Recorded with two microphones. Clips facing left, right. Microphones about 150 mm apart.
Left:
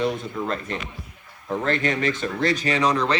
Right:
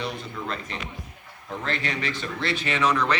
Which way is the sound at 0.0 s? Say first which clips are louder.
Left 7 dB; 45° left (ahead or behind).